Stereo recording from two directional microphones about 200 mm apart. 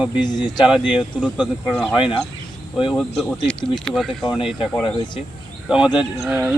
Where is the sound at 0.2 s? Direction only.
20° left (ahead or behind).